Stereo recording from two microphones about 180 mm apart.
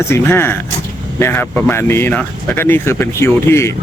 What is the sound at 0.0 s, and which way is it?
Speech, 15° left (ahead or behind).